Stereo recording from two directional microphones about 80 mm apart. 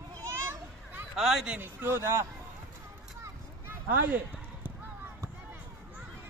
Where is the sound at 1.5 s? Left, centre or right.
Right.